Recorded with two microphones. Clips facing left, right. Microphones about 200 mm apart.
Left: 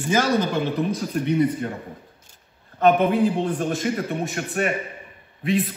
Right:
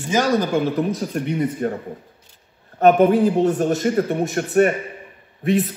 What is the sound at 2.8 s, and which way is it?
A man's voice, 45° right (ahead or behind).